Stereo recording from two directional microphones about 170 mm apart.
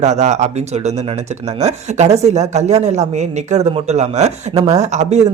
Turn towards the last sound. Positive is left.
turn(degrees=-40)  # may be behind; listen again after turning